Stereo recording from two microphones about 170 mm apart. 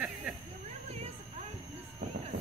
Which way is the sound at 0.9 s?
35° right (ahead or behind).